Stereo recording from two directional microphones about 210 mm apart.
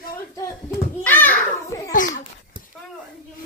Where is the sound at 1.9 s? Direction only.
35° left (ahead or behind).